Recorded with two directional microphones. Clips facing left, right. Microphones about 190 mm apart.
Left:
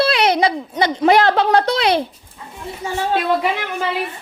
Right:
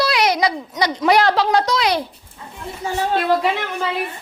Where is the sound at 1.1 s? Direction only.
50° left (ahead or behind).